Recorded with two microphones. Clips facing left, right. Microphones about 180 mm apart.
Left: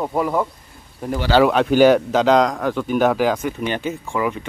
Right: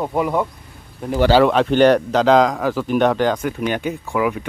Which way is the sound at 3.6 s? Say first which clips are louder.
Right 2 dB; 10° right (ahead or behind).